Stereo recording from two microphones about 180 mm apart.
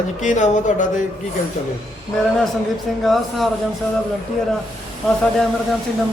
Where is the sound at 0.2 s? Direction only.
45° left (ahead or behind).